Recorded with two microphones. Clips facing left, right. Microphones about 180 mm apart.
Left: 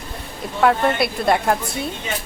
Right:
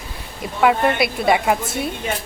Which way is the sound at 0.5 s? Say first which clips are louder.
Even; 5° right (ahead or behind).